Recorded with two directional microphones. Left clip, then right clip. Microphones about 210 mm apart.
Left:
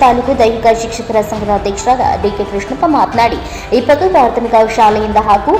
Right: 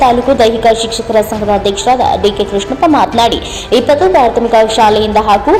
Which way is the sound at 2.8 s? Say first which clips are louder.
Right 1 dB; 15° right (ahead or behind).